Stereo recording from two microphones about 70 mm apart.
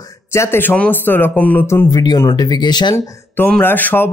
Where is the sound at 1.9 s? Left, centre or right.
Left.